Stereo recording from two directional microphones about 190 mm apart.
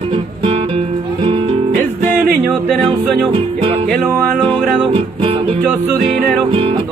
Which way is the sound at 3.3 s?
25° right (ahead or behind).